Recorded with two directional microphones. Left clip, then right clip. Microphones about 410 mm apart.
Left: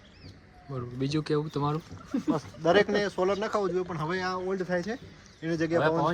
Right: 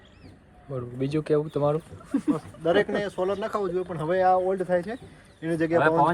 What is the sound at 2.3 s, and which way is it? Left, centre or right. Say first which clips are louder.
Speech: even; left.